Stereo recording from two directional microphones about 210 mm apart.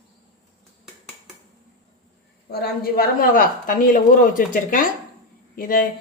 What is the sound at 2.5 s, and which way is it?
Speech, 50° left (ahead or behind).